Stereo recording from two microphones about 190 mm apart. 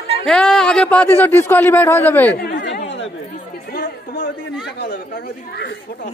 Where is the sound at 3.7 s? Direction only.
50° left (ahead or behind).